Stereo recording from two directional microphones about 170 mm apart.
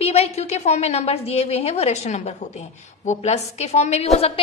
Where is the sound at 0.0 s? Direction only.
40° left (ahead or behind).